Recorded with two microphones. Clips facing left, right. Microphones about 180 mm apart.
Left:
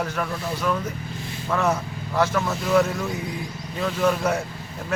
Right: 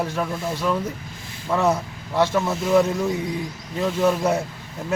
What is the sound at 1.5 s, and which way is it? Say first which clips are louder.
A man's voice: right 3 dB; 15° right (ahead or behind).